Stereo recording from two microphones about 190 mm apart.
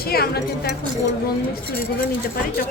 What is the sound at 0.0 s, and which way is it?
Speech, 55° left (ahead or behind).